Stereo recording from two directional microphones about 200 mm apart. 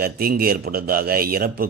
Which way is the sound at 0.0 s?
50° right (ahead or behind).